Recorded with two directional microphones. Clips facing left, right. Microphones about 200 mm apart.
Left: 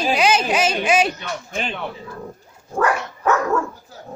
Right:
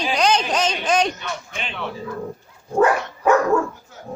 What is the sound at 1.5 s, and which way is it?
Speech, 45° left (ahead or behind).